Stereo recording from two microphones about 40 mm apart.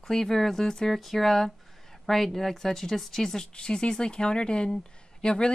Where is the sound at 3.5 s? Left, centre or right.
Left.